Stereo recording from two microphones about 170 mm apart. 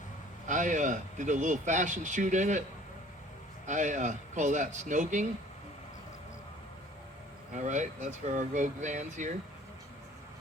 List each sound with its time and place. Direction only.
0.4 s speech: 50° right (ahead or behind)
3.7 s speech: 45° right (ahead or behind)
7.5 s speech: 45° right (ahead or behind)